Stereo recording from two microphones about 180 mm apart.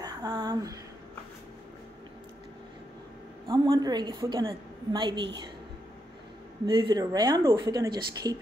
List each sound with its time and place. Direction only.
0.0 s a sound: 20° right (ahead or behind)
3.4 s speech: 30° right (ahead or behind)
6.6 s speech: 20° right (ahead or behind)